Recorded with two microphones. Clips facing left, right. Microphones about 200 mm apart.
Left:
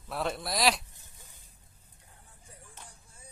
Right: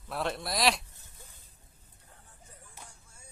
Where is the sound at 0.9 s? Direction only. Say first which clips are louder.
Right 2 dB; 15° left (ahead or behind).